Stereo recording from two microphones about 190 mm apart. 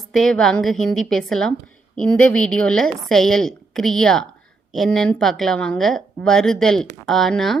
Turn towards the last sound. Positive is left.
turn(degrees=0)  # may be behind; listen again after turning